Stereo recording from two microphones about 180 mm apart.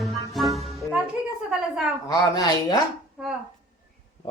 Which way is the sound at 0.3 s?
Centre (ahead or behind).